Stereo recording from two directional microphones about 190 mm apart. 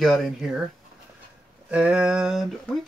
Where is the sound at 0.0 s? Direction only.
Centre (ahead or behind).